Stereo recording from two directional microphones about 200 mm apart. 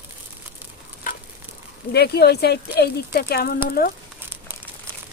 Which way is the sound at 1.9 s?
55° left (ahead or behind).